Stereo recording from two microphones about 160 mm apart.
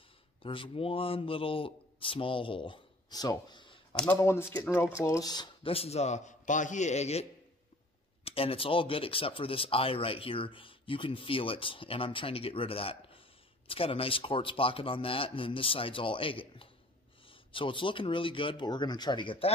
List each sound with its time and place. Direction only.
0.4 s a man's voice: 35° left (ahead or behind)
3.9 s speech: 5° left (ahead or behind); by 19.5 s 30° left (ahead or behind)